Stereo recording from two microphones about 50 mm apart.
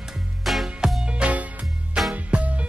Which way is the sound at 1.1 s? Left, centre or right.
Right.